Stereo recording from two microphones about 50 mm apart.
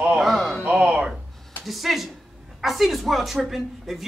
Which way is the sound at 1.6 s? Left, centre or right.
Centre.